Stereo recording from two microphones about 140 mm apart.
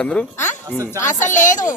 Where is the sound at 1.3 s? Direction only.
65° left (ahead or behind).